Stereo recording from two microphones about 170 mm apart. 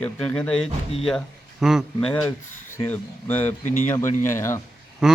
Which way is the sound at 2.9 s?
10° left (ahead or behind).